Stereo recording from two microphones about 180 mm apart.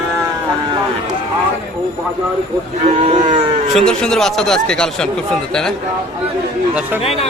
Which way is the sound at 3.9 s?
5° left (ahead or behind).